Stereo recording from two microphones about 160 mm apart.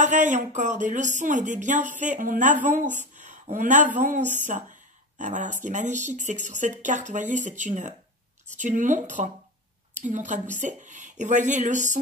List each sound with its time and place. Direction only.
0.0 s speech: 50° right (ahead or behind)